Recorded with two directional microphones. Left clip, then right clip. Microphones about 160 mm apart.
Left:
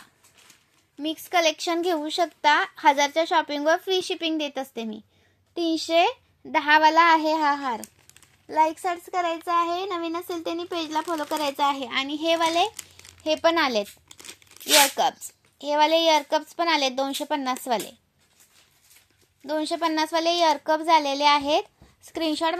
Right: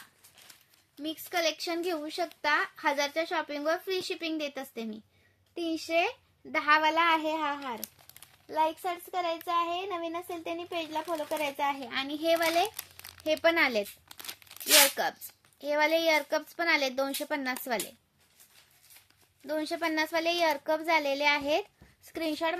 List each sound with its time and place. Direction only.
1.0 s a child's voice: 20° left (ahead or behind)
9.5 s a child's voice: 20° left (ahead or behind); by 13.8 s 5° left (ahead or behind)
14.1 s tearing: 5° right (ahead or behind)
15.0 s a child's voice: 5° left (ahead or behind)
19.4 s a child's voice: 5° left (ahead or behind)